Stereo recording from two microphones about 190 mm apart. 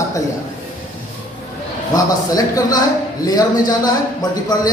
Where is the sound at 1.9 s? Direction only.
20° left (ahead or behind).